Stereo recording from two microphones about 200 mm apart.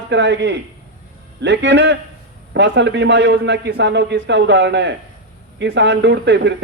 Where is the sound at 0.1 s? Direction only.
60° right (ahead or behind).